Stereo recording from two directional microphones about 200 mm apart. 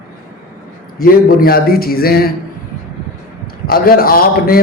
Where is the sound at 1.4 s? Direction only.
50° left (ahead or behind).